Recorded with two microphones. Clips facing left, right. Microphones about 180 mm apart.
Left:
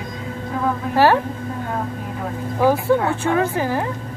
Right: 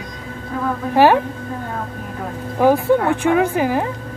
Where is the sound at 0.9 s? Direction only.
15° right (ahead or behind).